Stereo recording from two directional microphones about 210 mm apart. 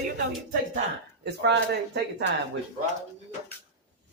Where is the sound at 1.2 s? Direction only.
55° right (ahead or behind).